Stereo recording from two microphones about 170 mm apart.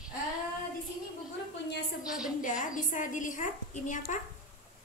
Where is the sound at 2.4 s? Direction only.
50° left (ahead or behind).